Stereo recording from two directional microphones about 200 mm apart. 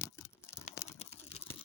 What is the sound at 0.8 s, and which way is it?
Typing, 15° left (ahead or behind).